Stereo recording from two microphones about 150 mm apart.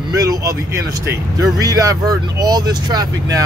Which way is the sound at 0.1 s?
25° right (ahead or behind).